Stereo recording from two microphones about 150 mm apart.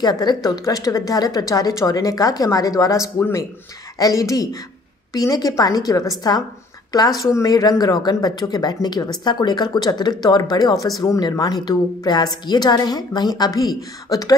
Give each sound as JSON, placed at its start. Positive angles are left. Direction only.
{"t": 0.0, "sound": "speech", "side_deg": 30}